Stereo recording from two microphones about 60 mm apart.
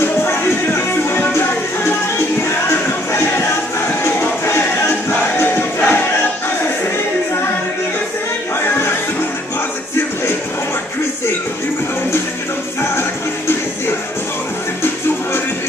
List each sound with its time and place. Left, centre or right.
0.0 s music: left
5.4 s crowd: left